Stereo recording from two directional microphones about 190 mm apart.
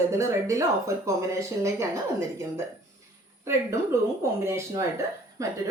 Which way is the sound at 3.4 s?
15° right (ahead or behind).